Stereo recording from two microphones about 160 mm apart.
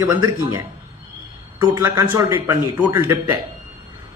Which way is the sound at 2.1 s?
20° right (ahead or behind).